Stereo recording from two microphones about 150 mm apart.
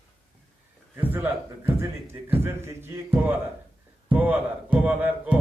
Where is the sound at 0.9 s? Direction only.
15° right (ahead or behind).